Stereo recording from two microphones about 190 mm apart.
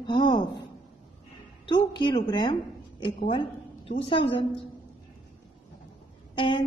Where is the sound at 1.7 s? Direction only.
25° left (ahead or behind).